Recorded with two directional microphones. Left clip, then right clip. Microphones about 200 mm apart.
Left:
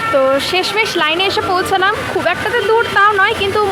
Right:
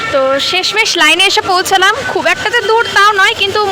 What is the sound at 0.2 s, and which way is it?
Speech, 5° right (ahead or behind).